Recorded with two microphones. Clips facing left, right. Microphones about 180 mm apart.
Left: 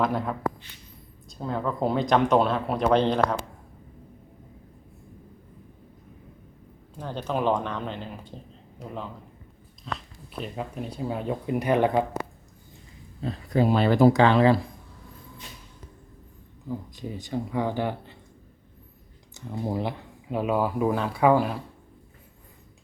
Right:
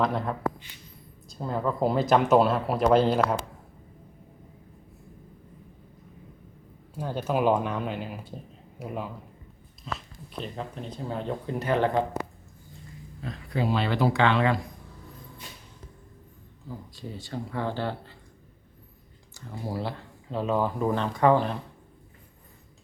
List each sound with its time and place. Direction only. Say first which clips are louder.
0.0 s speech: left 1 dB; centre (ahead or behind)
6.9 s speech: right 2 dB; 10° right (ahead or behind)
9.8 s chewing: left 1 dB; 5° right (ahead or behind)
10.4 s speech: left 3 dB; 10° left (ahead or behind)
13.2 s speech: left 5 dB; 35° left (ahead or behind)
16.6 s speech: left 5 dB; 15° left (ahead or behind)
19.3 s speech: left 4 dB; 20° left (ahead or behind)